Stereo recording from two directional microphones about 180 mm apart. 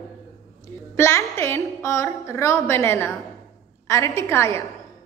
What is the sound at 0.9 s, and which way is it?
A woman's voice, 15° left (ahead or behind).